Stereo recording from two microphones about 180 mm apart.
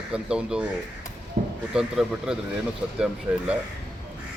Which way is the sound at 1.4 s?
50° right (ahead or behind).